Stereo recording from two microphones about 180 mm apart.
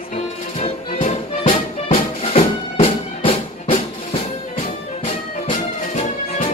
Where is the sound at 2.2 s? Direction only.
30° left (ahead or behind).